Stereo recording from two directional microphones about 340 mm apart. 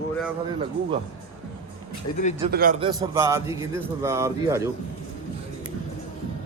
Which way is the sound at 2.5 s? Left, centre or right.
Right.